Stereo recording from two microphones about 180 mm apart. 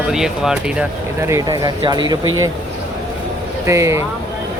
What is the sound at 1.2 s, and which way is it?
Speech, 15° right (ahead or behind).